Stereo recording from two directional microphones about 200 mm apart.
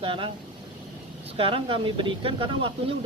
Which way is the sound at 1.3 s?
25° right (ahead or behind).